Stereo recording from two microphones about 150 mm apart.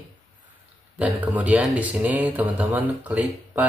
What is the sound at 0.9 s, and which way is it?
Speech, 10° right (ahead or behind).